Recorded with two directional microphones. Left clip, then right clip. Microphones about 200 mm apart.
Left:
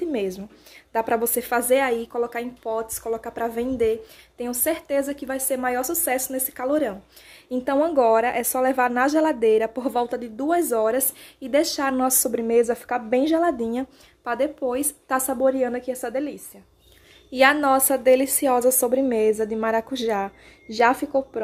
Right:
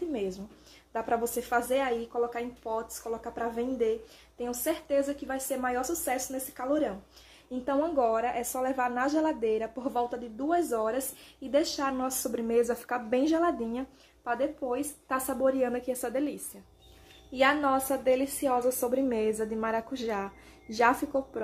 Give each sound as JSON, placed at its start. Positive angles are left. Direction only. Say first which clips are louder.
{"t": 0.1, "sound": "a woman's voice", "louder": "left 7 dB", "side_deg": 50}
{"t": 12.3, "sound": "speech", "louder": "left 5 dB", "side_deg": 30}
{"t": 15.5, "sound": "a woman's voice", "louder": "left 5 dB", "side_deg": 20}
{"t": 17.3, "sound": "speech", "louder": "left 8 dB", "side_deg": 50}
{"t": 20.6, "sound": "a woman's voice", "louder": "left 6 dB", "side_deg": 20}